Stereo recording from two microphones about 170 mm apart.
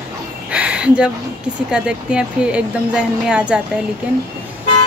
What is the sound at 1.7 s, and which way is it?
Speech, 5° right (ahead or behind).